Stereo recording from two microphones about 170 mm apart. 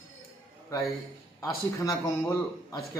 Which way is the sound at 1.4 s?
20° left (ahead or behind).